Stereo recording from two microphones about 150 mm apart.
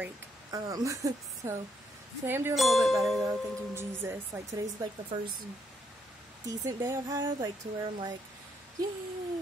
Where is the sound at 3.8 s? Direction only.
15° right (ahead or behind).